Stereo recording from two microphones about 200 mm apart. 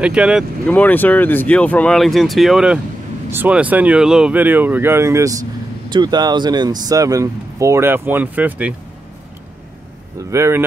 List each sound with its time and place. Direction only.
0.0 s speech: 5° right (ahead or behind)
0.7 s speech: 10° left (ahead or behind)
10.3 s speech: 15° right (ahead or behind)